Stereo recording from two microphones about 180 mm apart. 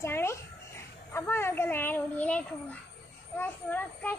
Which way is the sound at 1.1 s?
15° left (ahead or behind).